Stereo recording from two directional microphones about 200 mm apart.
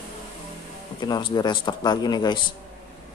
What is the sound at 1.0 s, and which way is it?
Speech, 20° left (ahead or behind).